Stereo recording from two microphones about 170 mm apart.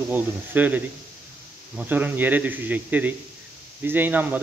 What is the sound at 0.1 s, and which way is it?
A man's voice, 10° right (ahead or behind).